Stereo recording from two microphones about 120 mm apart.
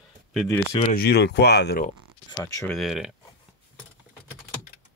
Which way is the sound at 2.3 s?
25° left (ahead or behind).